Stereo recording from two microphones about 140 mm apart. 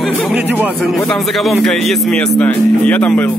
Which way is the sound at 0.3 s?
10° right (ahead or behind).